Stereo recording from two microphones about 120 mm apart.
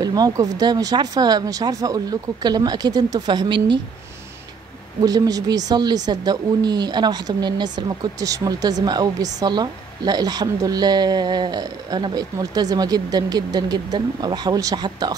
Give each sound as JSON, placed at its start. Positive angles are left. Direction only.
{"t": 0.0, "sound": "a woman's voice", "side_deg": -35}
{"t": 5.0, "sound": "a woman's voice", "side_deg": -30}